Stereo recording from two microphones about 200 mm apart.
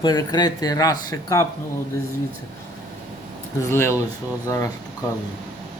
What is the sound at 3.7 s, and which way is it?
Speech, 10° left (ahead or behind).